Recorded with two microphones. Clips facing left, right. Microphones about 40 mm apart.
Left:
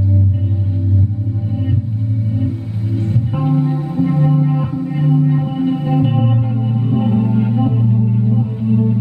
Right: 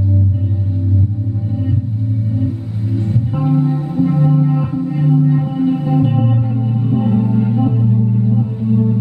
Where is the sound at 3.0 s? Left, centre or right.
Centre.